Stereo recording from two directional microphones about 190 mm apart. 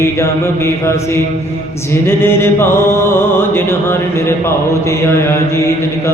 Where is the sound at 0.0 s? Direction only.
15° left (ahead or behind).